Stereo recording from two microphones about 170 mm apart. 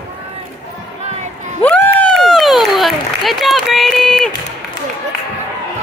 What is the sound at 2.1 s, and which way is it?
Applause, centre (ahead or behind).